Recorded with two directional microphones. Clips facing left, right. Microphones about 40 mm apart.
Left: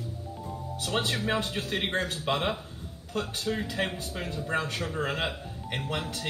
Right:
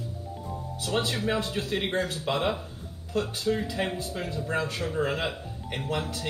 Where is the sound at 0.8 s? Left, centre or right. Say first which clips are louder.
Right 1 dB; left.